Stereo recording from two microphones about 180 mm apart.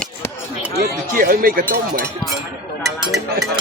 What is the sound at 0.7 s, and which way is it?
Speech, 55° right (ahead or behind).